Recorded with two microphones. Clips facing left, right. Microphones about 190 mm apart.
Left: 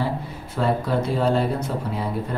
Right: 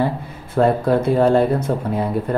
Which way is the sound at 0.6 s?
55° right (ahead or behind).